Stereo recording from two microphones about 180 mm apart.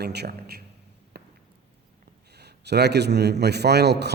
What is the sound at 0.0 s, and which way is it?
Speech, 65° right (ahead or behind).